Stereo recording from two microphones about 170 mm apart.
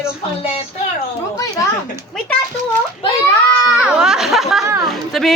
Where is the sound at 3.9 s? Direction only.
5° right (ahead or behind).